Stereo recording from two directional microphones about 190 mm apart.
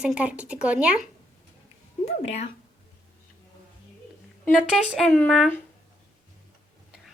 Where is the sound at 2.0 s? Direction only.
35° left (ahead or behind).